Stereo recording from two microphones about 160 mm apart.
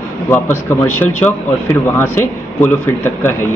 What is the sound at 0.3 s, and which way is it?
A man's voice, 15° left (ahead or behind).